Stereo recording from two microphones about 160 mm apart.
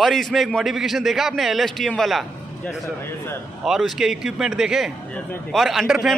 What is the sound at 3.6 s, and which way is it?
Speech, centre (ahead or behind).